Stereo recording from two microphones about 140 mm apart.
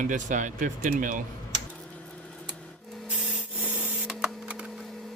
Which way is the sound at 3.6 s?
10° right (ahead or behind).